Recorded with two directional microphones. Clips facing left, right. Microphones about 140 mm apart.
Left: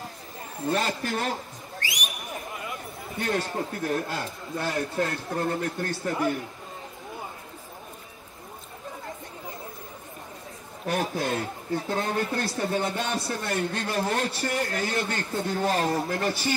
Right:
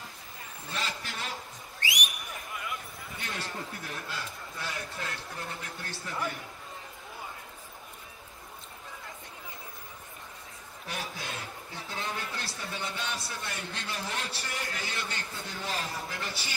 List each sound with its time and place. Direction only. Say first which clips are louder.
0.7 s speech: left 11 dB; 50° left (ahead or behind)
3.2 s speech: left 11 dB; 45° left (ahead or behind)
10.9 s speech: left 12 dB; 50° left (ahead or behind)